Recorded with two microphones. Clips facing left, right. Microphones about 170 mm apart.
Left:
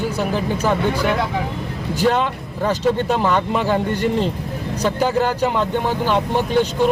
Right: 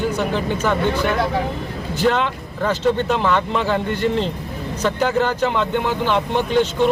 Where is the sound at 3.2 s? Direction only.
15° left (ahead or behind).